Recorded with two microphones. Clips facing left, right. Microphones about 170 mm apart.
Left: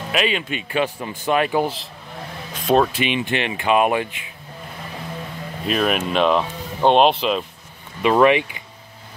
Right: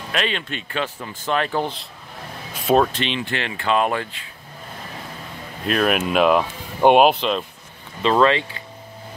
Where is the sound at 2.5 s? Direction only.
5° right (ahead or behind).